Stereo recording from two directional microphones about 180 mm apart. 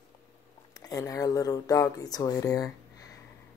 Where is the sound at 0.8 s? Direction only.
20° left (ahead or behind).